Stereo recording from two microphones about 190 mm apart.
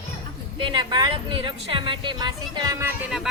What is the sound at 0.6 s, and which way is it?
A woman's voice, 25° right (ahead or behind).